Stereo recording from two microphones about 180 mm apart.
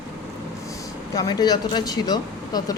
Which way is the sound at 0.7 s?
20° left (ahead or behind).